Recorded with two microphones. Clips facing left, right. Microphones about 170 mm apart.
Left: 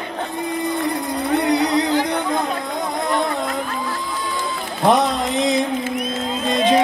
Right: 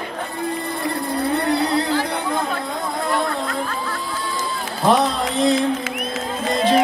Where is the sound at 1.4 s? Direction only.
15° left (ahead or behind).